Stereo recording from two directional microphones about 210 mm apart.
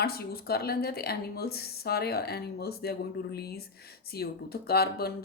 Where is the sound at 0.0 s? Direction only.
45° left (ahead or behind).